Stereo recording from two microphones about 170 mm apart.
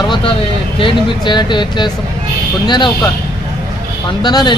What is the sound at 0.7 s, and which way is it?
Speech, 30° left (ahead or behind).